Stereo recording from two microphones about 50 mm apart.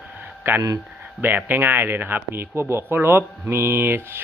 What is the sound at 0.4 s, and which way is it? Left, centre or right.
Speech, right.